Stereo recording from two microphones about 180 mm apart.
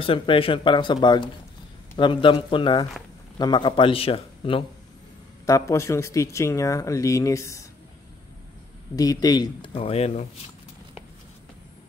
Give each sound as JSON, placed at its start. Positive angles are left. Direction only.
{"t": 0.0, "sound": "speech", "side_deg": 30}
{"t": 5.5, "sound": "speech", "side_deg": 15}
{"t": 8.9, "sound": "speech", "side_deg": 20}